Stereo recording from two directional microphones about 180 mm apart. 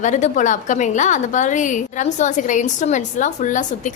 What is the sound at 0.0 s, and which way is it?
A woman's voice, 40° left (ahead or behind).